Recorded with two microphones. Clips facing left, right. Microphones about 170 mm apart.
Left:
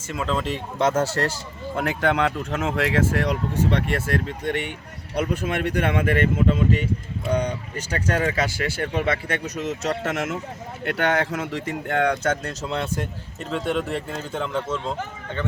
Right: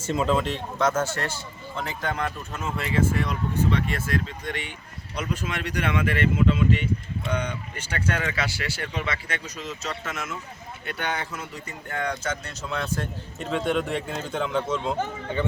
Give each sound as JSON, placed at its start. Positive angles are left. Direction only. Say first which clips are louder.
{"t": 0.8, "sound": "speech", "louder": "left 4 dB", "side_deg": 30}
{"t": 1.7, "sound": "speech", "louder": "left 8 dB", "side_deg": 60}
{"t": 12.6, "sound": "speech", "louder": "left 3 dB", "side_deg": 30}
{"t": 13.4, "sound": "speech", "louder": "even", "side_deg": 0}
{"t": 15.3, "sound": "a man's voice", "louder": "right 2 dB", "side_deg": -10}